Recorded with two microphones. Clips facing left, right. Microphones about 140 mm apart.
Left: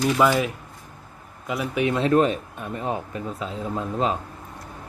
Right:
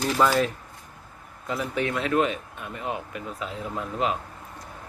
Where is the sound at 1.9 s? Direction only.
30° left (ahead or behind).